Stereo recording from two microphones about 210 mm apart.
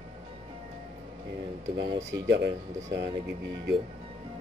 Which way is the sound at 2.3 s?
55° right (ahead or behind).